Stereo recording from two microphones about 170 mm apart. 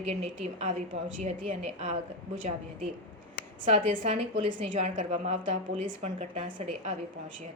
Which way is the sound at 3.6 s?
30° right (ahead or behind).